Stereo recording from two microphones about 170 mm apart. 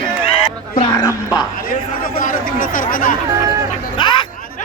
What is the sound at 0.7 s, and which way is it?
Music, 20° left (ahead or behind).